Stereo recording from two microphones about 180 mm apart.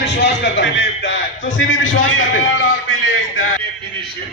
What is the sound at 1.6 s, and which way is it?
A man's voice, 90° left.